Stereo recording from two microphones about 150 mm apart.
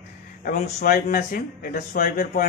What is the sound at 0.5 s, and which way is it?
Speech, 65° left (ahead or behind).